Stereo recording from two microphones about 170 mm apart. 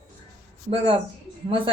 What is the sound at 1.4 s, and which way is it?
Speech, 30° right (ahead or behind).